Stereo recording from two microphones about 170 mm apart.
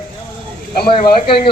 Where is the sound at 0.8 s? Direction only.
30° left (ahead or behind).